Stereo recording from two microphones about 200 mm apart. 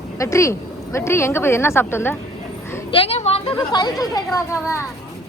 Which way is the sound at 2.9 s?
30° left (ahead or behind).